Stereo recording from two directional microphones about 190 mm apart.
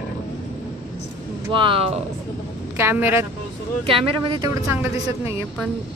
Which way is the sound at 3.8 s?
30° right (ahead or behind).